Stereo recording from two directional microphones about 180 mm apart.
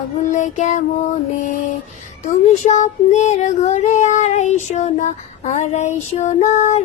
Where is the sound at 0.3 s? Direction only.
40° left (ahead or behind).